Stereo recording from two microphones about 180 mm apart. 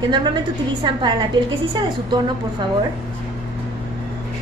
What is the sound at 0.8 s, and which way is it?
A woman's voice, 25° right (ahead or behind).